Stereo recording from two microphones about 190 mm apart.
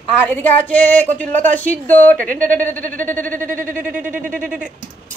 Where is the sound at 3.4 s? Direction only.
45° right (ahead or behind).